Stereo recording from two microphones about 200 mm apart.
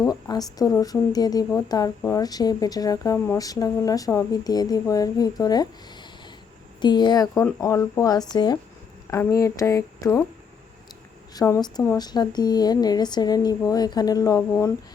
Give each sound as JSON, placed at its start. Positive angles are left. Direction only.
{"t": 0.1, "sound": "a woman's voice", "side_deg": 20}
{"t": 6.8, "sound": "a woman's voice", "side_deg": 20}
{"t": 11.3, "sound": "a woman's voice", "side_deg": 15}